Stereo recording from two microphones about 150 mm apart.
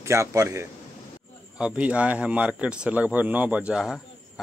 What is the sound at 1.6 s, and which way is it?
A man's voice, 10° right (ahead or behind).